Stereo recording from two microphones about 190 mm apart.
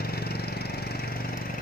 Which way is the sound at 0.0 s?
55° left (ahead or behind).